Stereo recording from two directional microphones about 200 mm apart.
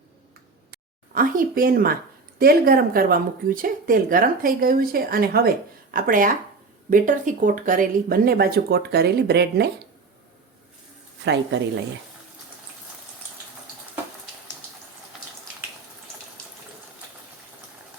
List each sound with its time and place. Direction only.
1.1 s speech: 45° right (ahead or behind)